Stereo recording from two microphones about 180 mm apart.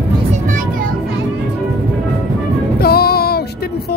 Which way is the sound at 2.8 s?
60° left (ahead or behind).